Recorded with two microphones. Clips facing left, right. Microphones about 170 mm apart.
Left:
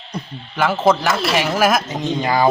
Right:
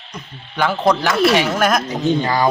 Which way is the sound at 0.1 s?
35° left (ahead or behind).